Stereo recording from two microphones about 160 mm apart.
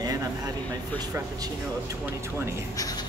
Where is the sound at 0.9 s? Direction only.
25° right (ahead or behind).